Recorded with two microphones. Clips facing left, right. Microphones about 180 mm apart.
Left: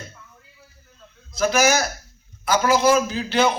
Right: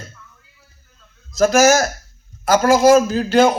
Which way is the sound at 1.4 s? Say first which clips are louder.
Right 6 dB; 45° right (ahead or behind).